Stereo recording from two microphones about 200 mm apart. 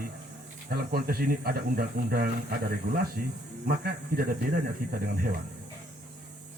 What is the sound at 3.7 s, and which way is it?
Speech, 45° right (ahead or behind).